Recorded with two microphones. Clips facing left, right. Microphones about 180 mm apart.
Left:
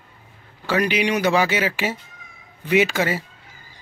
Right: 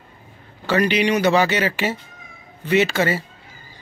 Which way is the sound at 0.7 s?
10° left (ahead or behind).